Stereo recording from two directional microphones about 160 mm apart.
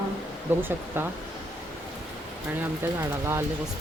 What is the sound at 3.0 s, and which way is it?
Speech, 15° right (ahead or behind).